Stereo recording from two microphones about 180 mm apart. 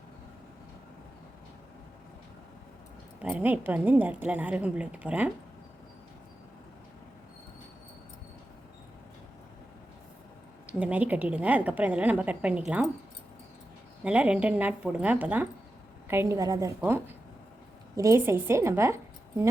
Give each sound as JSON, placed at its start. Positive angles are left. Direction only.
{"t": 3.2, "sound": "a woman's voice", "side_deg": -10}
{"t": 10.7, "sound": "a woman's voice", "side_deg": -5}
{"t": 14.0, "sound": "a woman's voice", "side_deg": -5}